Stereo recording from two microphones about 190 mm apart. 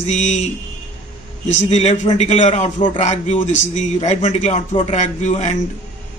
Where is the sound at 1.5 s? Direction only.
35° left (ahead or behind).